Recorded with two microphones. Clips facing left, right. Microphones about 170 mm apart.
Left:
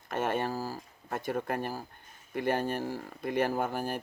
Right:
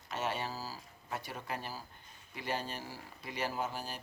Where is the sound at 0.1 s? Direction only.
50° left (ahead or behind).